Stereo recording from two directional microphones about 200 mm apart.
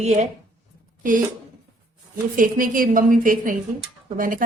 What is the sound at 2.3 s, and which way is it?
A woman's voice, 45° right (ahead or behind).